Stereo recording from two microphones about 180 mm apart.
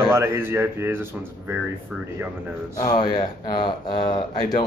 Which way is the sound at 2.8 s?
25° left (ahead or behind).